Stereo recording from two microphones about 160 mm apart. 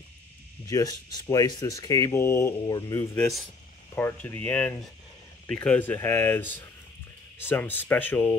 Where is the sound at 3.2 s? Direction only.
Centre (ahead or behind).